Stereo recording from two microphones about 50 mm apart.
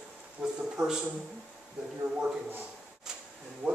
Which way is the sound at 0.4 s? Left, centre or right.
Centre.